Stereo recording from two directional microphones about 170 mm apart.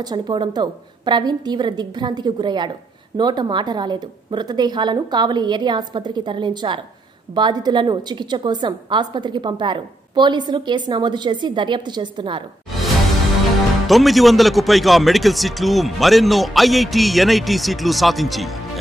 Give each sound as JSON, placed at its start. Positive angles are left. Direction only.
{"t": 0.0, "sound": "a woman's voice", "side_deg": -25}
{"t": 13.8, "sound": "speech", "side_deg": 0}